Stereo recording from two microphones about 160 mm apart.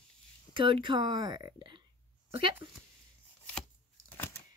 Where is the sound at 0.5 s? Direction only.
30° right (ahead or behind).